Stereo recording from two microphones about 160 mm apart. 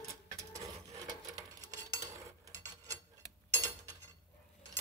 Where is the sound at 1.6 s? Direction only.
20° right (ahead or behind).